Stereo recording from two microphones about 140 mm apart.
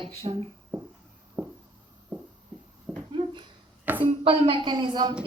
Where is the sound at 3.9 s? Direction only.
15° right (ahead or behind).